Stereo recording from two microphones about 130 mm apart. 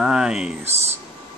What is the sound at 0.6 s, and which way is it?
Speech, 55° right (ahead or behind).